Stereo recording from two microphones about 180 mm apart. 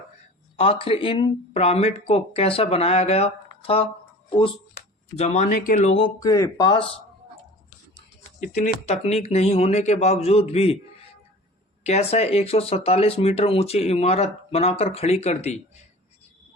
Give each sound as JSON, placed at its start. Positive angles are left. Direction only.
{"t": 0.6, "sound": "speech", "side_deg": 30}
{"t": 5.1, "sound": "speech", "side_deg": 40}
{"t": 6.1, "sound": "speech", "side_deg": 20}
{"t": 8.4, "sound": "speech", "side_deg": 40}
{"t": 11.8, "sound": "speech", "side_deg": 35}